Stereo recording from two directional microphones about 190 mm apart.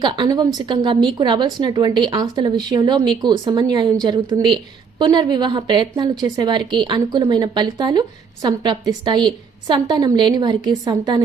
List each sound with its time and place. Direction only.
0.0 s a woman's voice: 25° right (ahead or behind)